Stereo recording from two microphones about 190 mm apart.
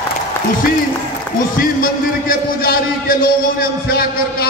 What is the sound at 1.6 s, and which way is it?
A man's voice, 50° left (ahead or behind).